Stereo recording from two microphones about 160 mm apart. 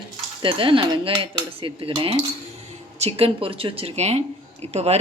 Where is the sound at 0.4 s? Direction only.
30° right (ahead or behind).